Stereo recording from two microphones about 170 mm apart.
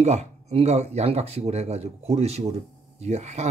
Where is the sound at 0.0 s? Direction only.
40° right (ahead or behind).